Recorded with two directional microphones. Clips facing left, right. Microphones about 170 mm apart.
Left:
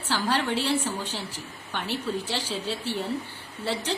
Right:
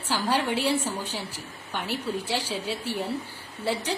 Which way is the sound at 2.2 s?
10° right (ahead or behind).